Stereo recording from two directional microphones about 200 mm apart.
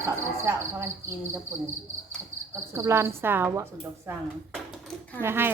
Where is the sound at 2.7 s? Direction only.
15° right (ahead or behind).